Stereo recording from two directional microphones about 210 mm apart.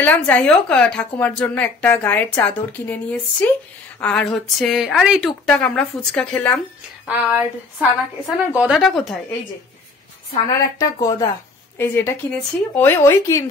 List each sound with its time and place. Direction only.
0.0 s a woman's voice: 10° left (ahead or behind)
7.1 s a woman's voice: 5° right (ahead or behind)
10.8 s a woman's voice: 15° left (ahead or behind)